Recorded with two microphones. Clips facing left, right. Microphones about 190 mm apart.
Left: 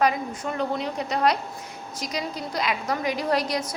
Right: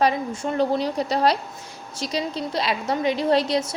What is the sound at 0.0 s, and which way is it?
A woman's voice, 30° right (ahead or behind).